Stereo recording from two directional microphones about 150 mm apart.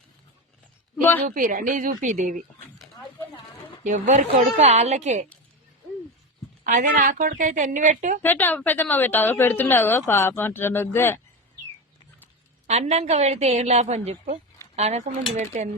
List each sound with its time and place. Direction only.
1.3 s a woman's voice: 65° right (ahead or behind)
3.8 s a woman's voice: 55° right (ahead or behind)
6.7 s a woman's voice: 60° right (ahead or behind)
8.2 s a woman's voice: 15° left (ahead or behind)
12.6 s a woman's voice: 45° right (ahead or behind)